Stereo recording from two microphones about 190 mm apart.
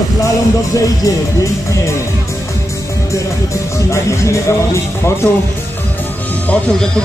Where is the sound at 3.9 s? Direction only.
15° left (ahead or behind).